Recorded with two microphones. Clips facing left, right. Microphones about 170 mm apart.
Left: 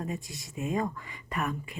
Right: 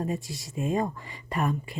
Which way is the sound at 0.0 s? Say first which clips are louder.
Right 5 dB; 30° right (ahead or behind).